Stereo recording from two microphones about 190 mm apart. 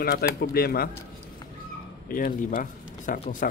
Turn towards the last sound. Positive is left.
turn(degrees=45)  # may be behind; listen again after turning